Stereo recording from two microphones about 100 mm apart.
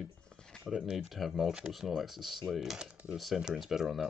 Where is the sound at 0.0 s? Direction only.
5° left (ahead or behind).